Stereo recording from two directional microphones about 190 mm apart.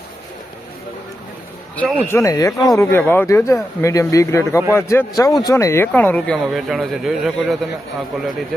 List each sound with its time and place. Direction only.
2.0 s speech: 15° left (ahead or behind); by 7.7 s centre (ahead or behind)